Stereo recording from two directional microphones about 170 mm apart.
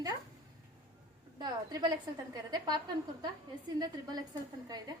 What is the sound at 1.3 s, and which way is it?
Speech, 25° right (ahead or behind).